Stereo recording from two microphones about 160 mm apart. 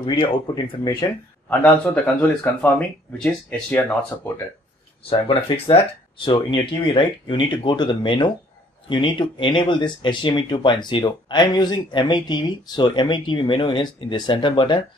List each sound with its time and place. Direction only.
0.0 s speech: 30° left (ahead or behind)
1.5 s speech: 10° left (ahead or behind)
5.1 s speech: 35° left (ahead or behind)